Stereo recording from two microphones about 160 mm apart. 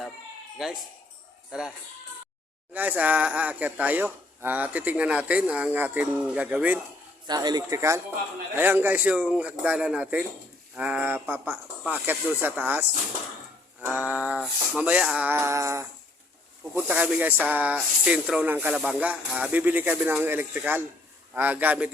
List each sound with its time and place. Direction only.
0.6 s speech: centre (ahead or behind)
2.7 s speech: 10° right (ahead or behind)
7.3 s speech: 25° right (ahead or behind); by 12.8 s 10° right (ahead or behind)
13.8 s speech: 10° right (ahead or behind)